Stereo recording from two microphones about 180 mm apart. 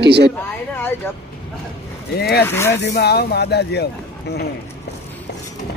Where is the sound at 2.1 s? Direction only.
60° left (ahead or behind).